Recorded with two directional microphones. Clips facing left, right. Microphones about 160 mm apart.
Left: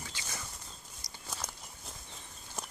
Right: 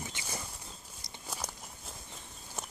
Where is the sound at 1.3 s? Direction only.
10° right (ahead or behind).